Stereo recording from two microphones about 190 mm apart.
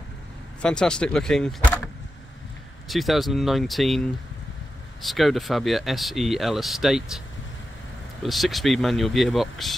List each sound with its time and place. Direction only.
0.6 s speech: 5° left (ahead or behind)
2.9 s speech: centre (ahead or behind)
8.2 s speech: centre (ahead or behind)